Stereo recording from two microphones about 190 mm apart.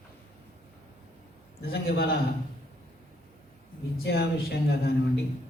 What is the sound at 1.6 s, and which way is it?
Speech, 55° left (ahead or behind).